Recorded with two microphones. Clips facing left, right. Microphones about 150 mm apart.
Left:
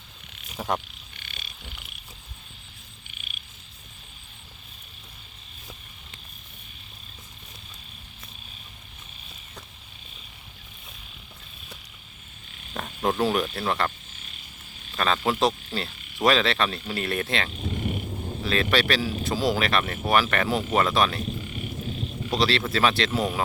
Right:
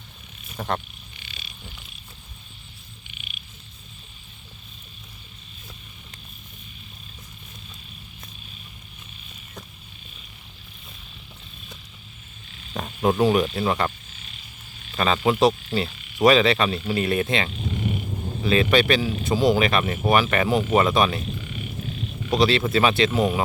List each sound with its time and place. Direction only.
0.5 s speech: 10° left (ahead or behind)
1.2 s frog: 55° left (ahead or behind)
12.7 s speech: 5° right (ahead or behind)
13.6 s cricket: 10° right (ahead or behind)
14.9 s speech: 5° right (ahead or behind)
22.3 s speech: centre (ahead or behind)